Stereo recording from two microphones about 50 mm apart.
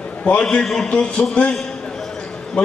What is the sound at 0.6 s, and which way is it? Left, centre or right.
Speech, centre.